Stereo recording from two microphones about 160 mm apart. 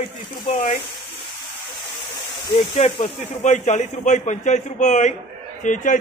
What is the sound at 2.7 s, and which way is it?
Speech, 40° left (ahead or behind).